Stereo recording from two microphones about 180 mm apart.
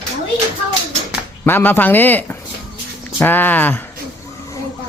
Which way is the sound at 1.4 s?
10° left (ahead or behind).